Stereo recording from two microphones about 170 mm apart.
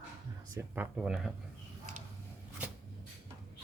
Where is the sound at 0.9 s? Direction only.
Centre (ahead or behind).